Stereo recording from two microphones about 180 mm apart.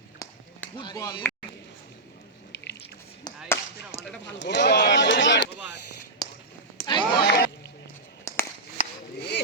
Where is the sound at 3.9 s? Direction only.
35° left (ahead or behind).